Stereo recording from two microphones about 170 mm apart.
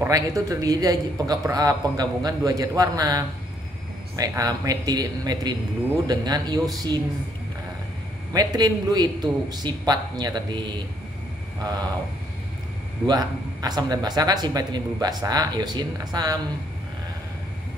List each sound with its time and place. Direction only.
0.0 s speech: 20° right (ahead or behind)
8.3 s speech: 25° right (ahead or behind)
13.0 s speech: 25° right (ahead or behind)